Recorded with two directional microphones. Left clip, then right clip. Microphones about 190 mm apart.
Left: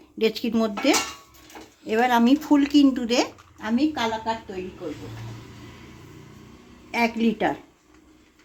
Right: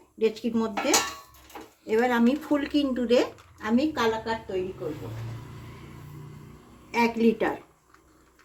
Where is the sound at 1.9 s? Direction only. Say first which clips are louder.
Left 4 dB; 55° left (ahead or behind).